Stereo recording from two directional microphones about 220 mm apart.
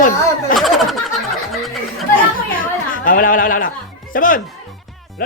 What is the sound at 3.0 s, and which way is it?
Speech, 40° left (ahead or behind).